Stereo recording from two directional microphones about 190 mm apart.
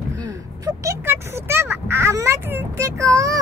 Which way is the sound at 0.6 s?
15° right (ahead or behind).